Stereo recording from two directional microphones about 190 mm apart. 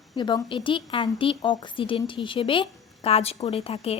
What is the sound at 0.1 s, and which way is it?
A woman's voice, 20° left (ahead or behind).